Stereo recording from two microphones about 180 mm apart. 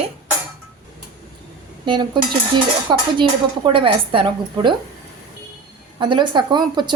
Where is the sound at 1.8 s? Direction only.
25° right (ahead or behind).